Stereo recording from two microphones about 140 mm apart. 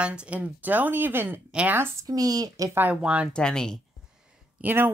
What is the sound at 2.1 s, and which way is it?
Speech, 25° right (ahead or behind).